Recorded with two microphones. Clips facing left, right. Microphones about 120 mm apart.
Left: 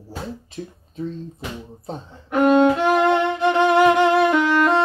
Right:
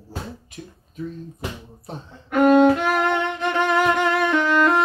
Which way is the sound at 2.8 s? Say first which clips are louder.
Left 4 dB; 15° left (ahead or behind).